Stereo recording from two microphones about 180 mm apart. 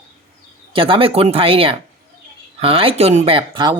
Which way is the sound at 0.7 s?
30° right (ahead or behind).